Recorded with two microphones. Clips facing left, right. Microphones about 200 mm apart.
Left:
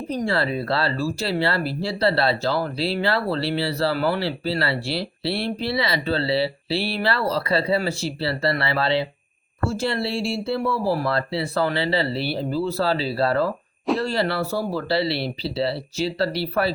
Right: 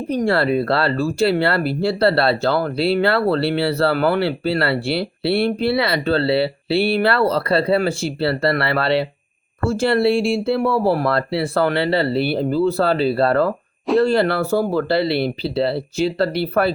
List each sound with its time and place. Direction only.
0.1 s speech: 60° right (ahead or behind)